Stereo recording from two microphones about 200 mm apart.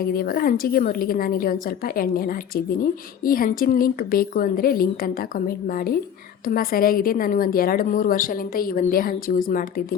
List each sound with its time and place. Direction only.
0.0 s a woman's voice: 50° left (ahead or behind)